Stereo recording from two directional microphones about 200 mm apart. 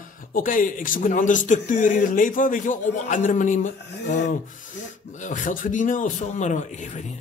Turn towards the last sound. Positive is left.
turn(degrees=35)  # may be behind; listen again after turning